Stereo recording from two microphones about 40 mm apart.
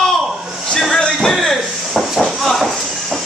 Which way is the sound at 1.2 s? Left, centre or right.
Centre.